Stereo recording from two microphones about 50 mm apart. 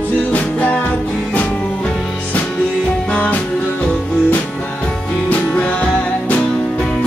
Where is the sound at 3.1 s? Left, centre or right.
Left.